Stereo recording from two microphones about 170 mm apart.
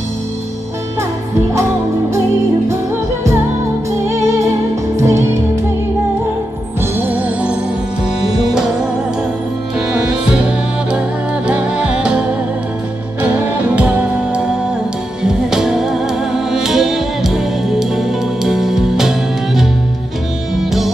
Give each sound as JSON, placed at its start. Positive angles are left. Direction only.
{"t": 4.9, "sound": "music", "side_deg": -15}
{"t": 7.0, "sound": "music", "side_deg": -10}
{"t": 10.3, "sound": "music", "side_deg": -5}
{"t": 13.7, "sound": "music", "side_deg": -10}